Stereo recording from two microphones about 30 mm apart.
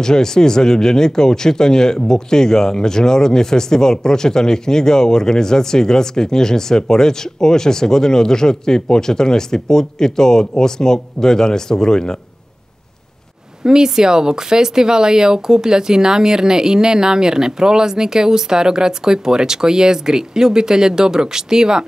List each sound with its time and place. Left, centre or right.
0.0 s speech: left
13.7 s speech: right